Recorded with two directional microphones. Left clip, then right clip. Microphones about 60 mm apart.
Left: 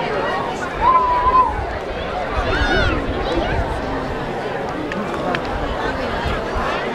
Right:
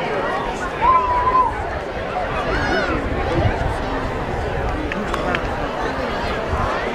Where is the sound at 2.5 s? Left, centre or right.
Left.